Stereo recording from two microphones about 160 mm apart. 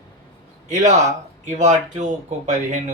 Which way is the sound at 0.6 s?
50° right (ahead or behind).